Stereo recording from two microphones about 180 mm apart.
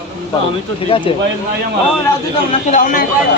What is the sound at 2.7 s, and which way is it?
Speech, 50° left (ahead or behind).